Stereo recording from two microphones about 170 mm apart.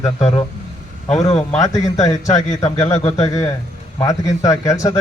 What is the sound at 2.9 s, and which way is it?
Speech, 40° left (ahead or behind).